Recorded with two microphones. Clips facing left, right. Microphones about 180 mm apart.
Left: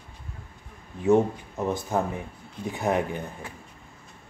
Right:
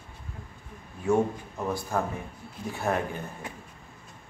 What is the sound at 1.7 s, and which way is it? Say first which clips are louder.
Speech: left 2 dB; 20° left (ahead or behind).